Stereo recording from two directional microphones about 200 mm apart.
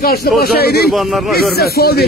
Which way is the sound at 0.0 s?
50° left (ahead or behind).